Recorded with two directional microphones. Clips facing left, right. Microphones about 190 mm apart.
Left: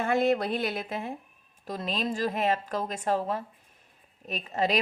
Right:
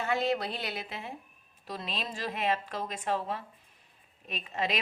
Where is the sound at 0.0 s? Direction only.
50° left (ahead or behind).